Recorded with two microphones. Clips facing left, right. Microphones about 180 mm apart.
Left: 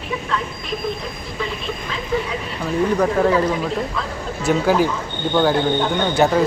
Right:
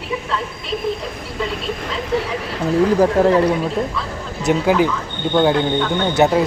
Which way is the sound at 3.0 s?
30° right (ahead or behind).